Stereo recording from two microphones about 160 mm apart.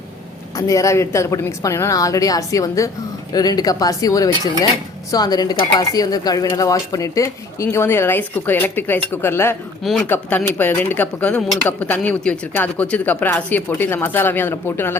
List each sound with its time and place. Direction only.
0.5 s speech: 20° left (ahead or behind)
9.8 s speech: centre (ahead or behind)